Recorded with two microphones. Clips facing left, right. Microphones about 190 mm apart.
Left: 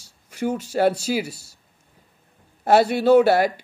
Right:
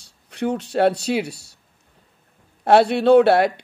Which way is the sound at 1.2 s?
65° right (ahead or behind).